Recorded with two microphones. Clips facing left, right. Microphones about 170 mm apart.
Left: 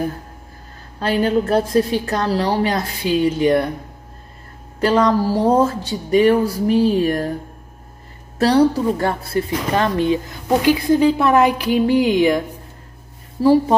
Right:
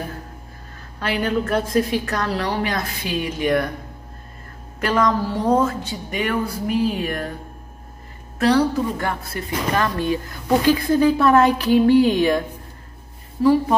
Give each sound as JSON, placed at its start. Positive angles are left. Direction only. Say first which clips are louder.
{"t": 0.9, "sound": "a woman's voice", "louder": "left 5 dB", "side_deg": 30}
{"t": 4.7, "sound": "a woman's voice", "louder": "left 4 dB", "side_deg": 30}
{"t": 8.4, "sound": "a woman's voice", "louder": "left 3 dB", "side_deg": 35}
{"t": 9.9, "sound": "a woman's voice", "louder": "left 4 dB", "side_deg": 20}
{"t": 13.4, "sound": "speech", "louder": "left 3 dB", "side_deg": 30}